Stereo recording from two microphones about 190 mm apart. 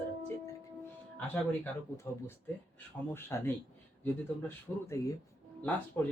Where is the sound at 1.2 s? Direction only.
10° left (ahead or behind).